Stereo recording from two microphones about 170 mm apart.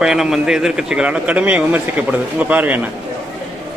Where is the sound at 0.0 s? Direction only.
5° right (ahead or behind).